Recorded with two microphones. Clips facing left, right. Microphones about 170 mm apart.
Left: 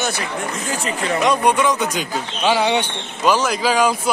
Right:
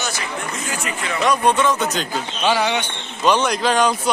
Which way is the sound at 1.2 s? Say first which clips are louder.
Even; 15° left (ahead or behind).